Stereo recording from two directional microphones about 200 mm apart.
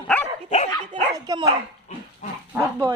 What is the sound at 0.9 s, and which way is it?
Dog, 25° right (ahead or behind).